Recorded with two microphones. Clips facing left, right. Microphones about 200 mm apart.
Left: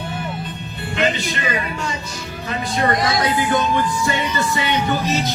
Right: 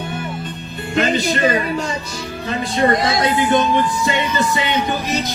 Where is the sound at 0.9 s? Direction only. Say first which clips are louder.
Right 4 dB; 40° right (ahead or behind).